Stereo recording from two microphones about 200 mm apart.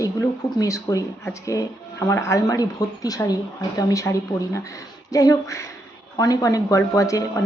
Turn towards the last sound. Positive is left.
turn(degrees=15)  # may be behind; listen again after turning